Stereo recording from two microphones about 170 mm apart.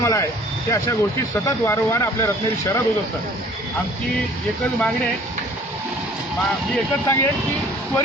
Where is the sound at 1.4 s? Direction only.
15° left (ahead or behind).